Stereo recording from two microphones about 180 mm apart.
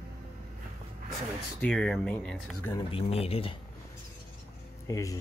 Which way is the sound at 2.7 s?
30° left (ahead or behind).